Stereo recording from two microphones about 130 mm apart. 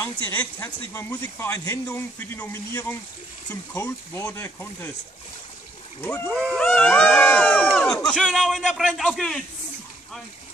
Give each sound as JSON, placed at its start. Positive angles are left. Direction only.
{"t": 0.0, "sound": "a man's voice", "side_deg": 15}
{"t": 6.0, "sound": "a man's voice", "side_deg": 15}
{"t": 6.3, "sound": "a man's voice", "side_deg": 0}